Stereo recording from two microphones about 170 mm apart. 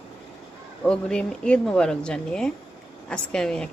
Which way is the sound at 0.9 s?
5° left (ahead or behind).